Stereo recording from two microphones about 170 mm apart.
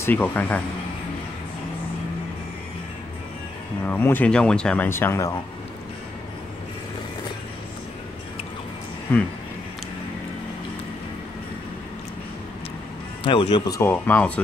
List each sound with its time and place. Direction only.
0.0 s speech: 10° left (ahead or behind)
3.8 s speech: 10° left (ahead or behind)
13.2 s speech: 30° left (ahead or behind)
13.7 s speech: 10° left (ahead or behind)